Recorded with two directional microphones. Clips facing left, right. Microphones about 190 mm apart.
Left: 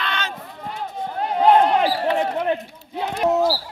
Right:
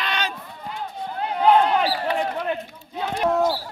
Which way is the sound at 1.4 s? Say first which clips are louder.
Left 2 dB; 40° left (ahead or behind).